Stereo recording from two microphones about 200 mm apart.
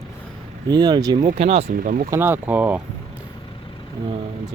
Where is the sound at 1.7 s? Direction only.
40° right (ahead or behind).